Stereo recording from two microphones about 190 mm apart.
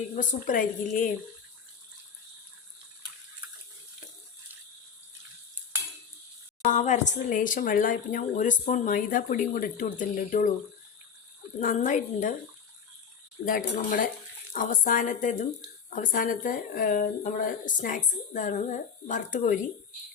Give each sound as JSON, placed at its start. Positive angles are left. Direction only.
{"t": 0.2, "sound": "speech", "side_deg": 45}
{"t": 6.6, "sound": "speech", "side_deg": 40}
{"t": 11.6, "sound": "speech", "side_deg": 40}
{"t": 13.4, "sound": "speech", "side_deg": 50}